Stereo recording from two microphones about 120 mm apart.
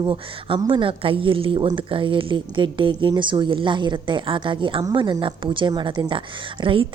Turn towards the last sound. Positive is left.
turn(degrees=-45)  # may be behind; listen again after turning